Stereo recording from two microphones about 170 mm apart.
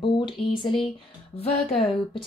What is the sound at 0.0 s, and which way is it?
Speech, 30° left (ahead or behind).